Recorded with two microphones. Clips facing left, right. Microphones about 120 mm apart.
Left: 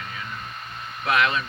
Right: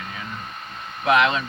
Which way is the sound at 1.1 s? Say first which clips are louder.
Right 4 dB; 25° right (ahead or behind).